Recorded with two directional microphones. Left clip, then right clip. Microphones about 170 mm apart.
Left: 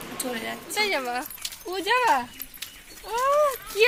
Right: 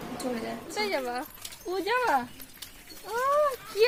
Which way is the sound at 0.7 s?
20° left (ahead or behind).